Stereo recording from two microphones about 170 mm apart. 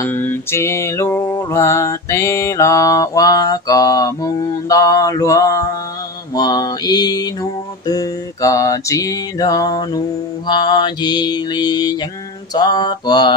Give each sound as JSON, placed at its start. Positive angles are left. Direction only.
{"t": 0.0, "sound": "music", "side_deg": 10}
{"t": 6.3, "sound": "mantra", "side_deg": 25}
{"t": 7.8, "sound": "music", "side_deg": 20}